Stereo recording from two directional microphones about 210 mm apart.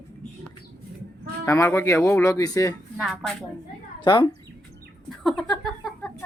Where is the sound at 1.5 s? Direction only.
15° left (ahead or behind).